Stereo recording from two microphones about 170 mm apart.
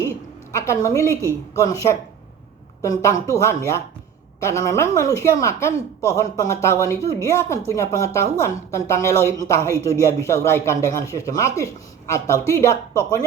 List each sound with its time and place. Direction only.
0.5 s a woman's voice: 15° left (ahead or behind)